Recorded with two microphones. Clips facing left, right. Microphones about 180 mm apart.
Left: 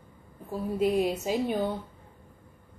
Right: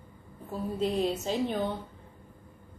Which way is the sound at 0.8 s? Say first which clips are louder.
Left 3 dB; 10° left (ahead or behind).